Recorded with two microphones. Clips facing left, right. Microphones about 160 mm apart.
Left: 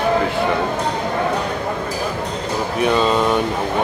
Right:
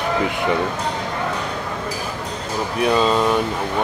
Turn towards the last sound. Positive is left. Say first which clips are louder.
# left 1 dB
turn(degrees=0)  # may be behind; listen again after turning